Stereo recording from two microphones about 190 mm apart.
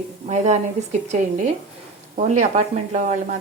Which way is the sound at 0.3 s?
35° right (ahead or behind).